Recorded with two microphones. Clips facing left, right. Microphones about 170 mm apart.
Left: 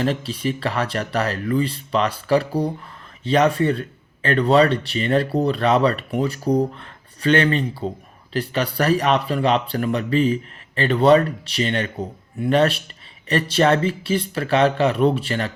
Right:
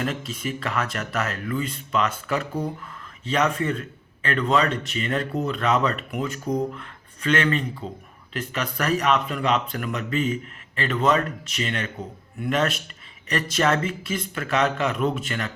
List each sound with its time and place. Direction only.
0.0 s speech: 30° left (ahead or behind)